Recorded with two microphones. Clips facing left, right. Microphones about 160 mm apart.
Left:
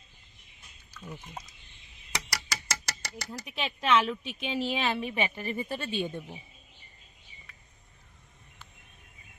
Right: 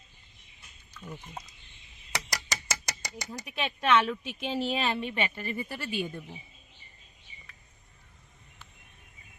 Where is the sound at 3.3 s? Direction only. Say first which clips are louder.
Right 1 dB; centre (ahead or behind).